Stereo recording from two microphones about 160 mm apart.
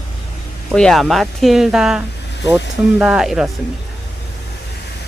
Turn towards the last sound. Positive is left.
turn(degrees=-5)  # may be behind; listen again after turning